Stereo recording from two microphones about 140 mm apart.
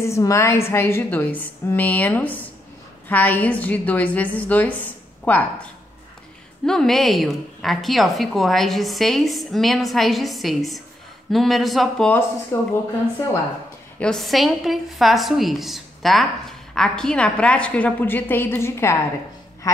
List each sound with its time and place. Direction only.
0.0 s a woman's voice: 20° left (ahead or behind); by 12.1 s centre (ahead or behind)
12.5 s speech: 20° left (ahead or behind)
13.9 s a woman's voice: 5° left (ahead or behind); by 19.8 s 25° left (ahead or behind)